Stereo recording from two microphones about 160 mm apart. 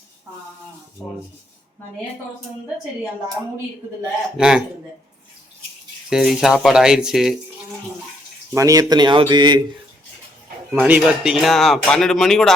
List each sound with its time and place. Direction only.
4.4 s speech: 5° right (ahead or behind)
6.1 s speech: 5° right (ahead or behind)
8.5 s speech: 20° right (ahead or behind)
10.8 s speech: 10° right (ahead or behind)